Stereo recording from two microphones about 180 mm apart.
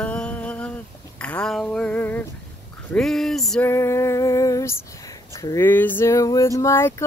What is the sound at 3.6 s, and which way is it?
Female singing, 15° left (ahead or behind).